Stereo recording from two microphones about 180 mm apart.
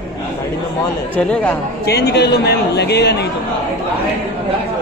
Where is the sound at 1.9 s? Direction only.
65° left (ahead or behind).